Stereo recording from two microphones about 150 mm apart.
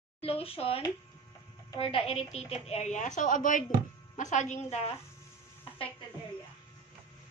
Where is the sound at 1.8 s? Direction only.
40° left (ahead or behind).